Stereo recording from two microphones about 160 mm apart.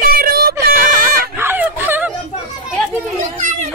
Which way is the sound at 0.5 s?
15° right (ahead or behind).